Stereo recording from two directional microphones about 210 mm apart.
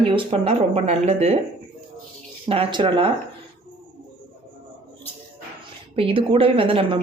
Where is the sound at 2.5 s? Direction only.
25° right (ahead or behind).